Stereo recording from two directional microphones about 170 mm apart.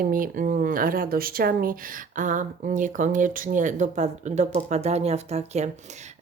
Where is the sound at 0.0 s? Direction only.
55° right (ahead or behind).